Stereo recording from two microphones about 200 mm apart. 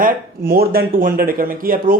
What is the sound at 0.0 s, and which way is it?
A man's voice, 50° right (ahead or behind).